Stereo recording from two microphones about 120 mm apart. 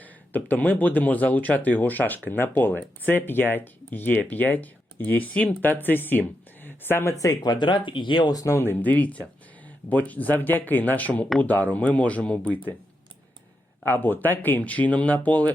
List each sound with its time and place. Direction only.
0.0 s speech: 15° left (ahead or behind)
13.8 s speech: 15° left (ahead or behind)